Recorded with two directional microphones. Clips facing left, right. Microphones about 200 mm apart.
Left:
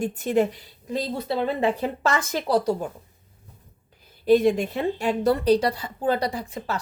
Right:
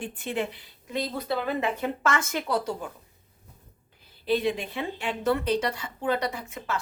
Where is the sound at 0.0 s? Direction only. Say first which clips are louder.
Left 9 dB; 40° left (ahead or behind).